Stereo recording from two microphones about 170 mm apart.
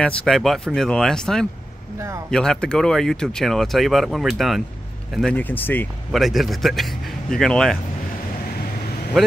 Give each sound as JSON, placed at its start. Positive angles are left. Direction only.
{"t": 0.0, "sound": "speech", "side_deg": 5}
{"t": 2.0, "sound": "speech", "side_deg": -15}
{"t": 2.3, "sound": "speech", "side_deg": 5}
{"t": 6.1, "sound": "speech", "side_deg": 0}
{"t": 9.1, "sound": "speech", "side_deg": 0}